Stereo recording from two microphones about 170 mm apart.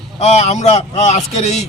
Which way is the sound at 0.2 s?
40° left (ahead or behind).